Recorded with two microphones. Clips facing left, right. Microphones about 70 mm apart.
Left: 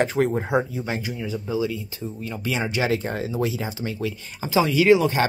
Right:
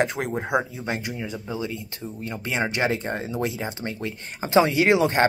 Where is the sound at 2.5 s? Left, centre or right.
Right.